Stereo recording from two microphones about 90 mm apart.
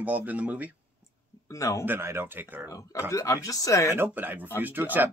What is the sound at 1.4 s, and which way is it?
Speech, 35° left (ahead or behind).